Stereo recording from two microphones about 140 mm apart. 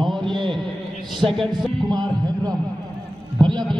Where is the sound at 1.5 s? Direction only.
30° right (ahead or behind).